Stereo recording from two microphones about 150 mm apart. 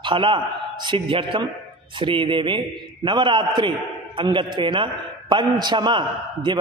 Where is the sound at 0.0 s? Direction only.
35° right (ahead or behind).